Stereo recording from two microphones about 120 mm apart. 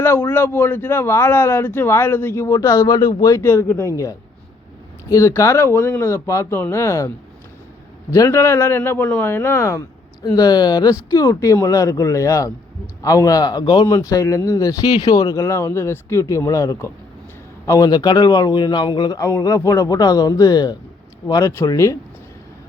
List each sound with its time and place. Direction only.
0.3 s speech: 15° left (ahead or behind)
8.1 s speech: 25° left (ahead or behind)
10.3 s a man's voice: 35° left (ahead or behind)